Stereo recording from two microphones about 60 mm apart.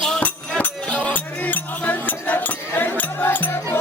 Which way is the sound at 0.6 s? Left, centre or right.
Left.